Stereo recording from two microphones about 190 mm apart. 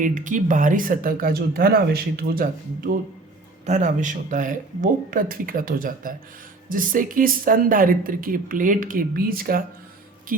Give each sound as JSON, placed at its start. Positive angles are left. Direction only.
{"t": 0.0, "sound": "speech", "side_deg": -45}